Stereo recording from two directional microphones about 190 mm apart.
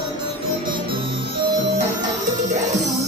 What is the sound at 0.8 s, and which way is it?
Music, 25° right (ahead or behind).